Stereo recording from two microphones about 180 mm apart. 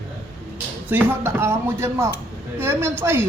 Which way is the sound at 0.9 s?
10° right (ahead or behind).